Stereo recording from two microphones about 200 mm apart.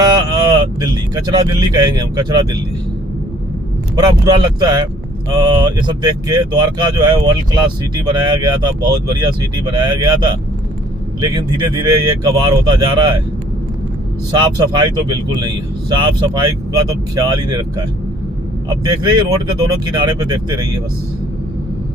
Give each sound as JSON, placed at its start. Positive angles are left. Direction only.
{"t": 0.0, "sound": "speech", "side_deg": -20}
{"t": 3.9, "sound": "speech", "side_deg": -20}
{"t": 14.3, "sound": "speech", "side_deg": -20}
{"t": 18.9, "sound": "speech", "side_deg": -20}